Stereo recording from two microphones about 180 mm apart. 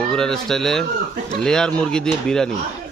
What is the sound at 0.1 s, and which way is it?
Speech, 5° left (ahead or behind).